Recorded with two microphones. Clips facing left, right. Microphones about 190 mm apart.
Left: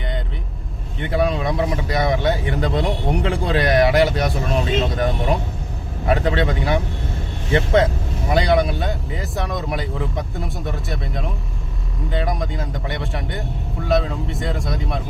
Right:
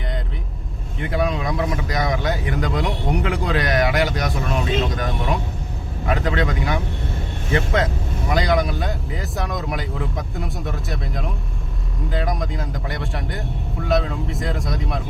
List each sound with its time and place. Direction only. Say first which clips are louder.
1.1 s speech: left 3 dB; 30° left (ahead or behind)
8.8 s speech: left 1 dB; centre (ahead or behind)